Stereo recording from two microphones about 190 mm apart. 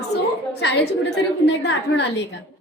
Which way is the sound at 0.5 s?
60° left (ahead or behind).